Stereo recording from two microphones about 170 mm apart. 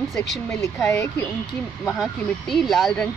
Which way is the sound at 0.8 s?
15° left (ahead or behind).